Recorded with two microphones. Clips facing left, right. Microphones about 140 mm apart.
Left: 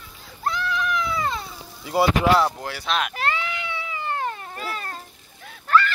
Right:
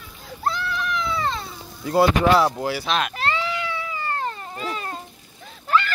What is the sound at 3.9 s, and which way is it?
Cat, 15° left (ahead or behind).